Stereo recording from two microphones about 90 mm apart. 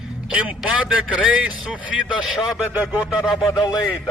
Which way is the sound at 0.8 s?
10° right (ahead or behind).